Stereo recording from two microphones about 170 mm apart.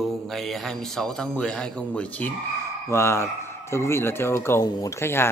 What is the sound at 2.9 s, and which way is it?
A man's voice, 15° left (ahead or behind).